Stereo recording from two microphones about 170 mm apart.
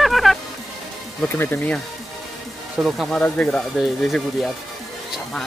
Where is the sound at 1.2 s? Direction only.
10° left (ahead or behind).